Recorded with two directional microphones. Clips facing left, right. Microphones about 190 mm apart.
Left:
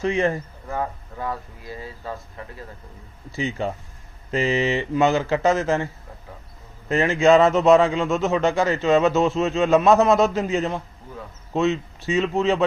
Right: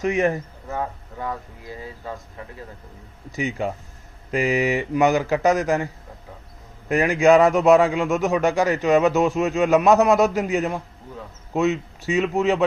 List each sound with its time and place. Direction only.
0.0 s a man's voice: 20° right (ahead or behind)